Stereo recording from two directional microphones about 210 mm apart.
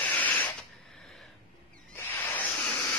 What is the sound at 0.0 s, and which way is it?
Spray, 10° left (ahead or behind).